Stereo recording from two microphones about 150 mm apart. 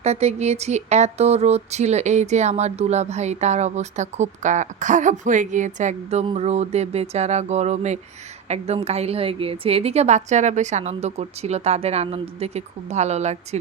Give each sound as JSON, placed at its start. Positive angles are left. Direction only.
{"t": 0.0, "sound": "speech", "side_deg": -45}